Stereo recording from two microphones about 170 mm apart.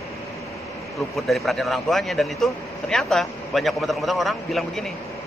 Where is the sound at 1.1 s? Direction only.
Centre (ahead or behind).